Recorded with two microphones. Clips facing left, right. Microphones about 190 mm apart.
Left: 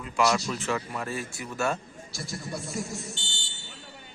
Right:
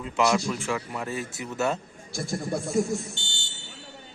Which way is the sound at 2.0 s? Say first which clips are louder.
Right 7 dB; 55° right (ahead or behind).